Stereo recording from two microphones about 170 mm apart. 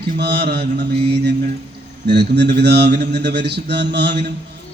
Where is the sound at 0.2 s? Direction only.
75° right (ahead or behind).